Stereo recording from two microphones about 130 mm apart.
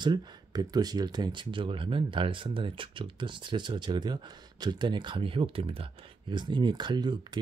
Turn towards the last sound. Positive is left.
turn(degrees=-35)  # may be behind; listen again after turning